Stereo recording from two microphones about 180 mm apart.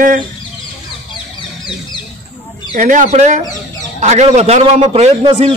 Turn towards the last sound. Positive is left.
turn(degrees=-30)  # may be behind; listen again after turning